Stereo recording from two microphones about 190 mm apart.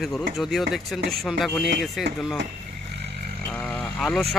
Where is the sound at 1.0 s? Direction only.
55° right (ahead or behind).